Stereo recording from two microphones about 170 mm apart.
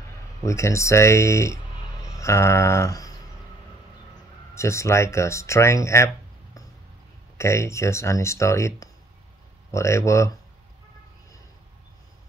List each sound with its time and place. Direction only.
0.4 s speech: 15° left (ahead or behind)
2.0 s a sound: 20° left (ahead or behind)
4.6 s speech: 15° left (ahead or behind)